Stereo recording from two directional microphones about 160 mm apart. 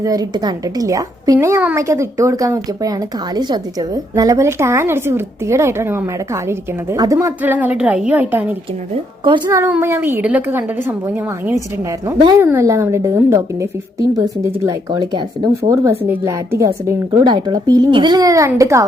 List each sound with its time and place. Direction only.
0.0 s a woman's voice: 20° right (ahead or behind)
8.9 s a woman's voice: 30° right (ahead or behind)
9.6 s a woman's voice: 10° right (ahead or behind)